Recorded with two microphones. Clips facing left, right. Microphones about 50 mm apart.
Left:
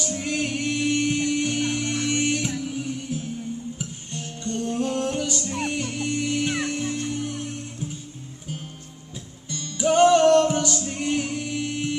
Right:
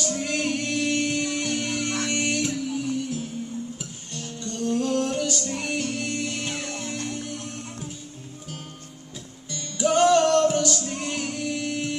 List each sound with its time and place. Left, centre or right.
0.0 s music: centre
3.7 s music: left
9.8 s music: centre